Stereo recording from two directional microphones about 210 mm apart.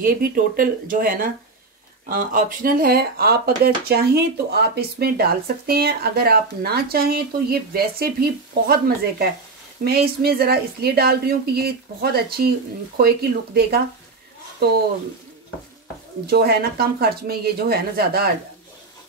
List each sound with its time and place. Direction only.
0.0 s speech: 40° right (ahead or behind)
16.3 s speech: 50° right (ahead or behind)